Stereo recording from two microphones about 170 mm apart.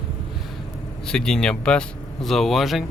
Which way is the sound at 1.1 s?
5° left (ahead or behind).